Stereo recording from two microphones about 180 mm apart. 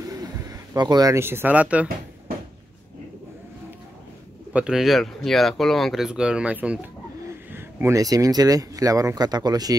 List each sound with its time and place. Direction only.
0.1 s speech: 20° right (ahead or behind)
4.5 s speech: 5° right (ahead or behind); by 9.8 s 20° right (ahead or behind)